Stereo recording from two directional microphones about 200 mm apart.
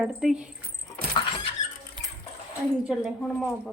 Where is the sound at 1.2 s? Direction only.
20° left (ahead or behind).